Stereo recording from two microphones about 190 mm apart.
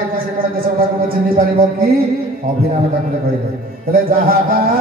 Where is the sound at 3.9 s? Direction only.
50° right (ahead or behind).